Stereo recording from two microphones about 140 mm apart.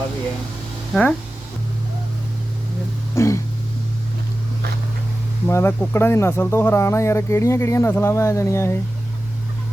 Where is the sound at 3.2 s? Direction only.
20° left (ahead or behind).